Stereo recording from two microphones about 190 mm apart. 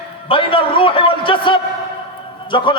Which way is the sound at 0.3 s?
25° left (ahead or behind).